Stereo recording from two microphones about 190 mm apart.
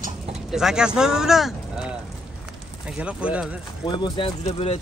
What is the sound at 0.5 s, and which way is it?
Speech, centre (ahead or behind).